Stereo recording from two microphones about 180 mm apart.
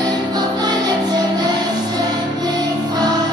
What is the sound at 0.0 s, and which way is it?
Music, 25° right (ahead or behind).